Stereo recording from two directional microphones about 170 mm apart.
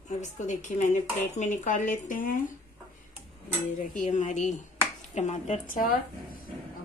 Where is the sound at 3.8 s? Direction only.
50° left (ahead or behind).